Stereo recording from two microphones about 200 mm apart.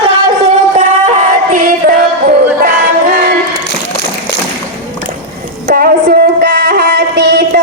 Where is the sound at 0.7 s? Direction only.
35° right (ahead or behind).